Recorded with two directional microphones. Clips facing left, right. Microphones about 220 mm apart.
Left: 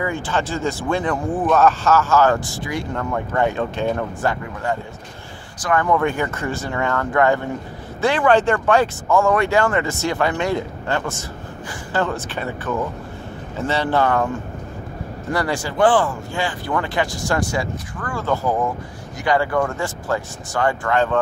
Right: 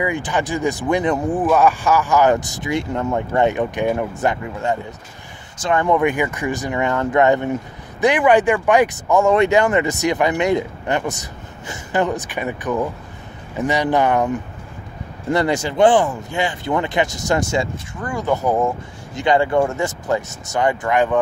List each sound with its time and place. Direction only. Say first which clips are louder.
0.0 s speech: right 2 dB; 15° right (ahead or behind)
15.3 s speech: right 4 dB; 20° right (ahead or behind)